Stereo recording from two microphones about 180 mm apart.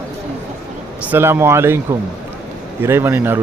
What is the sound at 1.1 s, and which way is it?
A man's voice, 15° right (ahead or behind).